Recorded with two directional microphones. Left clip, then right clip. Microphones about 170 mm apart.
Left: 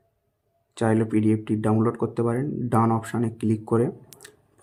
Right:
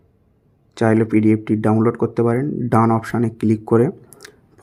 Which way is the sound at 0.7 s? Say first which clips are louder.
Right 7 dB; 25° right (ahead or behind).